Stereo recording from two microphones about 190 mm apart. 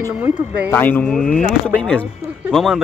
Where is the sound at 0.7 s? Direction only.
10° left (ahead or behind).